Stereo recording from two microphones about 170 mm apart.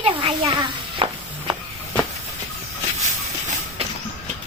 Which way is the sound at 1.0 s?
30° right (ahead or behind).